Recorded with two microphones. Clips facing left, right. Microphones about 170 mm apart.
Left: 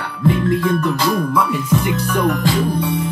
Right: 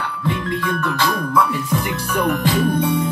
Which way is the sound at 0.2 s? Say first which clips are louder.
Left 8 dB; 35° left (ahead or behind).